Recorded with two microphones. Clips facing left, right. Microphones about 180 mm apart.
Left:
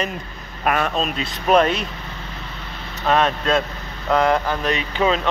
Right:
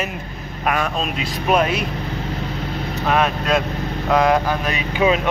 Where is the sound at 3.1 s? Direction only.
10° right (ahead or behind).